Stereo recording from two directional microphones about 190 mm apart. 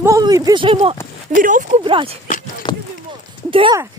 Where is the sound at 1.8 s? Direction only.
25° right (ahead or behind).